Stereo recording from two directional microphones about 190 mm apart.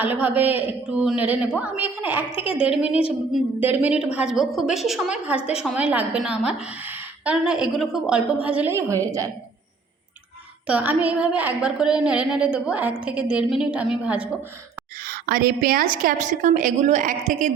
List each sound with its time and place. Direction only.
0.0 s a man's voice: 10° right (ahead or behind)
10.7 s a woman's voice: 5° right (ahead or behind)
14.9 s a woman's voice: 50° right (ahead or behind)